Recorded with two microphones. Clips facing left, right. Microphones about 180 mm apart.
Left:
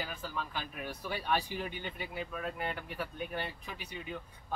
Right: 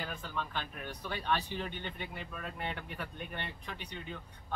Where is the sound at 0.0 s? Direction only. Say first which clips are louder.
Even; 5° left (ahead or behind).